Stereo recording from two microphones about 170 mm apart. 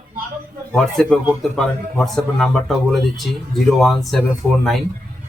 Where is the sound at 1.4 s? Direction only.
Centre (ahead or behind).